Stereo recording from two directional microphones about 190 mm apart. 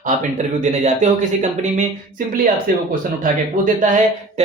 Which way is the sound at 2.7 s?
50° right (ahead or behind).